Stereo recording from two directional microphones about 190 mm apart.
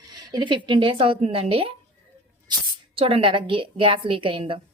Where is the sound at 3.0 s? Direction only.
30° right (ahead or behind).